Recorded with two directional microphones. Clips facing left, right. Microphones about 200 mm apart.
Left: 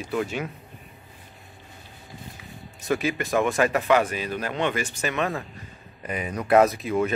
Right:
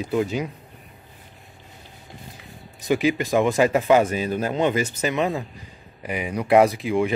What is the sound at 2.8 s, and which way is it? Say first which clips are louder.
A man's voice: right 5 dB; 15° right (ahead or behind).